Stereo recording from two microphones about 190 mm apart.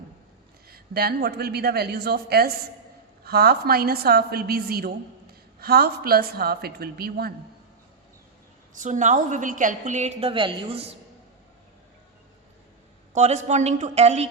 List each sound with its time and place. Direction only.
0.7 s a woman's voice: 55° right (ahead or behind)
8.7 s a woman's voice: 40° right (ahead or behind)
13.1 s a woman's voice: 35° right (ahead or behind)